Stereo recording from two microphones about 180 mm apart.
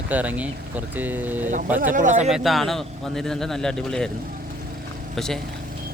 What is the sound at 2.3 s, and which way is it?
Speech, centre (ahead or behind).